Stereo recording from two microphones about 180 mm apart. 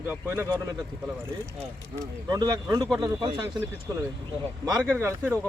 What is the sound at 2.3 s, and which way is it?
Speech, 20° right (ahead or behind).